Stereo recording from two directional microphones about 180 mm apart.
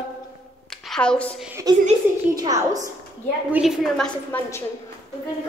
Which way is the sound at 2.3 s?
20° right (ahead or behind).